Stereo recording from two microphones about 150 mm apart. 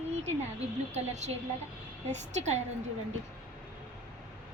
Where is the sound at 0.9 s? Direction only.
50° right (ahead or behind).